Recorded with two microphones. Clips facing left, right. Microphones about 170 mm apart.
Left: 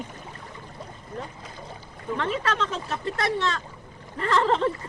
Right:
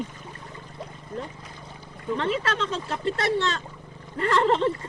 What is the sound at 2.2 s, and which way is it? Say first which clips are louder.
Speech: even; 25° right (ahead or behind).